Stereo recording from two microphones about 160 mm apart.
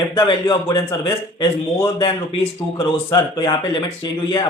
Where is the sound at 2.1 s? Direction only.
35° left (ahead or behind).